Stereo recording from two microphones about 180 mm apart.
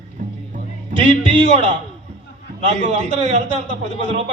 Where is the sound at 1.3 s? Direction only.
35° right (ahead or behind).